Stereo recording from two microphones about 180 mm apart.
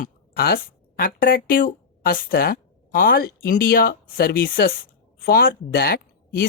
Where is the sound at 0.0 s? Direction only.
60° left (ahead or behind).